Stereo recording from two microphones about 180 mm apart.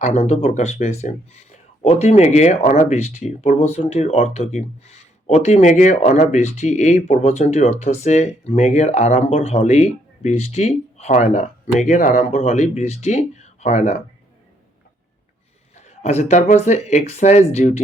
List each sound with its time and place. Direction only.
0.0 s speech: 35° left (ahead or behind)
15.7 s speech: 35° left (ahead or behind)